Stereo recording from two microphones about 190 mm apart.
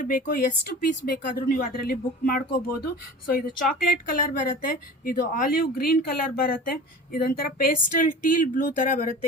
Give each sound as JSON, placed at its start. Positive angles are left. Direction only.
{"t": 0.0, "sound": "speech", "side_deg": 45}